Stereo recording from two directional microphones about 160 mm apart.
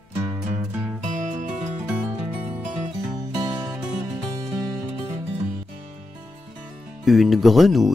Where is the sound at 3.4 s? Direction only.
25° right (ahead or behind).